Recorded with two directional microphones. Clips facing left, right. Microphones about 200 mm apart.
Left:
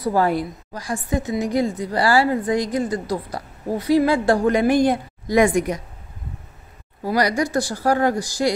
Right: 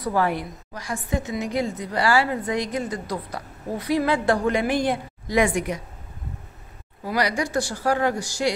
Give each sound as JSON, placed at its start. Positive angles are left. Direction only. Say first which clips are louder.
{"t": 0.7, "sound": "a woman's voice", "louder": "left 3 dB", "side_deg": 35}
{"t": 7.1, "sound": "a woman's voice", "louder": "left 4 dB", "side_deg": 40}